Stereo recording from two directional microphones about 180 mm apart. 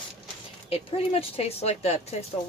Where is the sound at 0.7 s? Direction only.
35° left (ahead or behind).